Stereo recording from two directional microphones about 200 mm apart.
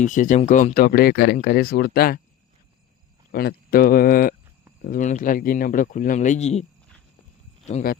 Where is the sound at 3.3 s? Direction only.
50° left (ahead or behind); by 6.6 s 35° left (ahead or behind).